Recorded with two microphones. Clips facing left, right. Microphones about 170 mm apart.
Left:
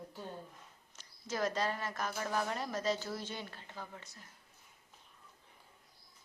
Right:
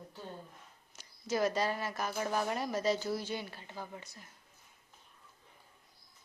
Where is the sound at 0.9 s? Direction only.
10° right (ahead or behind).